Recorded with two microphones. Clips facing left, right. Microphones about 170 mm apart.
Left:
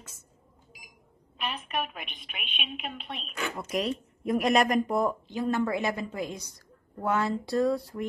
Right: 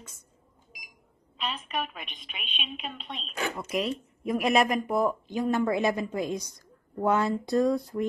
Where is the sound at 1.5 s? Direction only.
60° left (ahead or behind).